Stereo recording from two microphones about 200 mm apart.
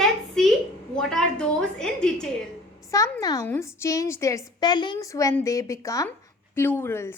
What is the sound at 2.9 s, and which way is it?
A woman's voice, 15° left (ahead or behind).